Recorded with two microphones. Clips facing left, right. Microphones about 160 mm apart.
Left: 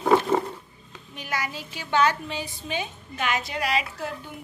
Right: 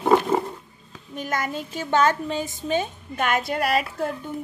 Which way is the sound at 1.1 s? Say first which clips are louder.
Right 5 dB; 45° right (ahead or behind).